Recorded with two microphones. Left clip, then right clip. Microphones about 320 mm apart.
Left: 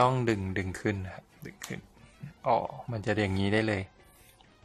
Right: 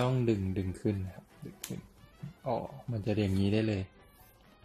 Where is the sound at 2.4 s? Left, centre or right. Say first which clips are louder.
Left 8 dB; left.